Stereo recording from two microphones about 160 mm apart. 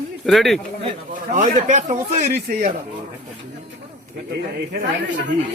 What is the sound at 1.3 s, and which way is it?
Speech, 55° right (ahead or behind).